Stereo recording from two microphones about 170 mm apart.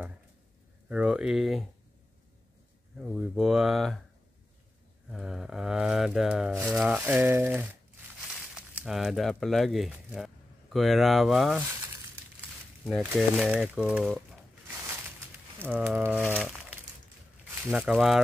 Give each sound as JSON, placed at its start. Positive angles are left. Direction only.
{"t": 0.8, "sound": "mantra", "side_deg": -5}
{"t": 3.0, "sound": "mantra", "side_deg": -5}
{"t": 5.1, "sound": "mantra", "side_deg": 0}
{"t": 6.7, "sound": "a sound", "side_deg": -5}
{"t": 8.5, "sound": "speech", "side_deg": -5}
{"t": 12.8, "sound": "mantra", "side_deg": 0}
{"t": 14.9, "sound": "a sound", "side_deg": -10}
{"t": 16.3, "sound": "crumpling", "side_deg": 0}
{"t": 17.6, "sound": "mantra", "side_deg": 0}